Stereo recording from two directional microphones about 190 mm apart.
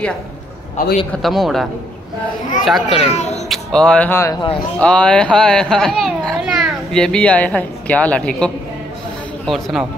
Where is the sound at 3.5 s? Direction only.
5° left (ahead or behind).